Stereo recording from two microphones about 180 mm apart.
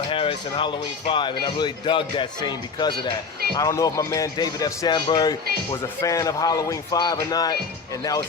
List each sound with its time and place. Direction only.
0.1 s speech: 30° left (ahead or behind)